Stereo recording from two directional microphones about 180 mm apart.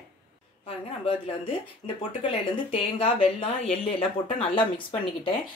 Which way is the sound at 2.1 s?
30° left (ahead or behind).